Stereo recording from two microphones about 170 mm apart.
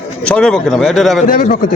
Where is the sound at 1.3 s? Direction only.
55° left (ahead or behind).